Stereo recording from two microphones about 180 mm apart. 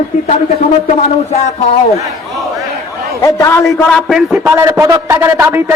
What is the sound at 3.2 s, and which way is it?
Speech, 15° left (ahead or behind).